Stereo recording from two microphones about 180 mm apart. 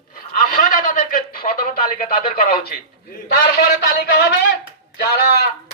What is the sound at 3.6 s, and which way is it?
Speech, 65° left (ahead or behind).